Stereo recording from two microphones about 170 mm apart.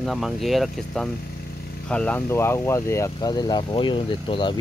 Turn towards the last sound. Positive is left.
turn(degrees=30)  # may be behind; listen again after turning